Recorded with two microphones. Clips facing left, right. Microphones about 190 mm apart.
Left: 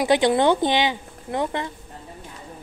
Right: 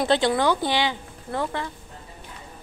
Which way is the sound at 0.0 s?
15° left (ahead or behind).